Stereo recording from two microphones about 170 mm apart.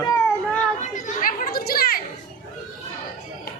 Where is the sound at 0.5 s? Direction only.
45° left (ahead or behind); by 2.0 s 65° left (ahead or behind).